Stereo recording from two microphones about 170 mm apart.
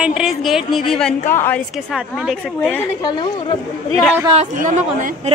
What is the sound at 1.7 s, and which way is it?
A woman's voice, centre (ahead or behind).